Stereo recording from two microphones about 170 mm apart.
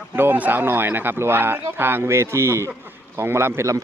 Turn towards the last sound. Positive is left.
turn(degrees=-15)  # may be behind; listen again after turning